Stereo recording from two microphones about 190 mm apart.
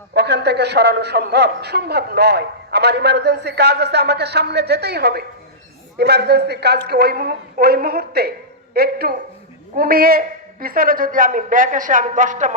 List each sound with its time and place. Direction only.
0.1 s a man's voice: 60° right (ahead or behind); by 12.5 s 40° right (ahead or behind)